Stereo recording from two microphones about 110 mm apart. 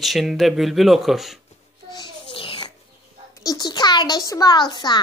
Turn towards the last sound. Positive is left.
turn(degrees=40)  # may be behind; listen again after turning